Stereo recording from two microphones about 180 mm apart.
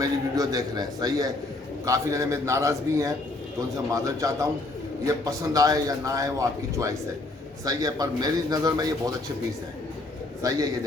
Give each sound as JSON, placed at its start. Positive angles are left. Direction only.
{"t": 0.0, "sound": "a man's voice", "side_deg": -20}
{"t": 10.4, "sound": "a man's voice", "side_deg": -20}